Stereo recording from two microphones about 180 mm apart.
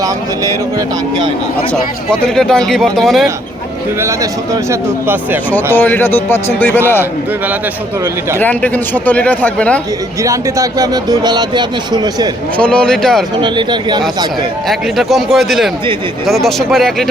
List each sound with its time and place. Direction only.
2.0 s speech: 5° left (ahead or behind)
4.0 s a man's voice: 15° right (ahead or behind)
5.7 s speech: 10° left (ahead or behind)
8.4 s speech: 10° left (ahead or behind)
10.2 s speech: 15° right (ahead or behind)
12.5 s speech: 5° left (ahead or behind)
13.4 s speech: 25° right (ahead or behind)
14.7 s speech: centre (ahead or behind)